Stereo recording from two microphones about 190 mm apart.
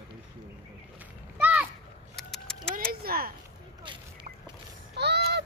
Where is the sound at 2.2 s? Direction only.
5° left (ahead or behind).